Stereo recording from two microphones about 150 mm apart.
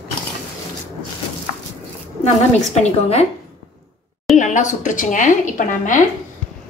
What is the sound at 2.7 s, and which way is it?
Speech, 45° left (ahead or behind).